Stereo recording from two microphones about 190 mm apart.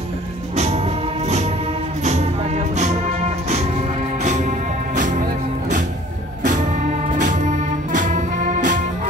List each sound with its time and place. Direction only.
0.6 s music: 35° right (ahead or behind)
4.2 s music: 40° right (ahead or behind)
6.4 s music: 40° right (ahead or behind)